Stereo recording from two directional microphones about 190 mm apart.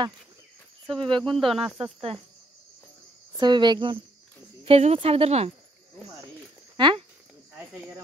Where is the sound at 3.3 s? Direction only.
25° right (ahead or behind).